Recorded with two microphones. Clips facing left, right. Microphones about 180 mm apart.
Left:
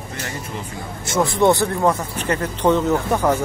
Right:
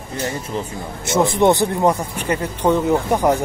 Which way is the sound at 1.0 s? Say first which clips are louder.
Right 2 dB; 20° right (ahead or behind).